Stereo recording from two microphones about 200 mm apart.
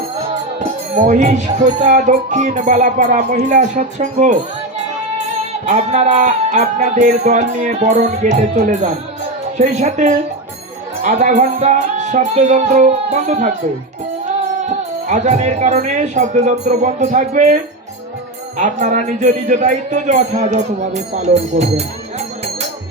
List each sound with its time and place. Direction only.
0.6 s music: 35° right (ahead or behind)
5.6 s music: 35° right (ahead or behind)
14.7 s music: 35° right (ahead or behind)